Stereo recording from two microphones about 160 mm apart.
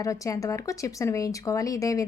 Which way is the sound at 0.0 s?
20° left (ahead or behind).